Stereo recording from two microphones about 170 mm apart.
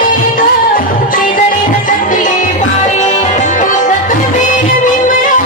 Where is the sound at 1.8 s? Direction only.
50° left (ahead or behind).